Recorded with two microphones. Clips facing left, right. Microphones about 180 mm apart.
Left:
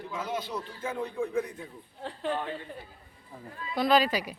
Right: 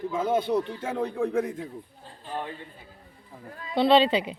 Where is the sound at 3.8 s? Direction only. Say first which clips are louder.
Right 5 dB; 30° right (ahead or behind).